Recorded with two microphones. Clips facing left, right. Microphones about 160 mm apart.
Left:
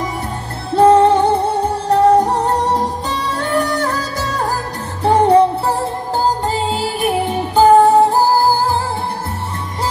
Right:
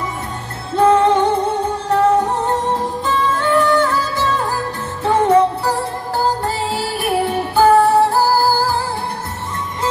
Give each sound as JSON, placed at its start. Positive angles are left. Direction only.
{"t": 0.7, "sound": "music", "side_deg": 35}
{"t": 6.7, "sound": "music", "side_deg": 20}